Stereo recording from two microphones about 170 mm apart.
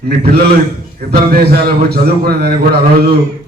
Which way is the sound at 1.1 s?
65° right (ahead or behind).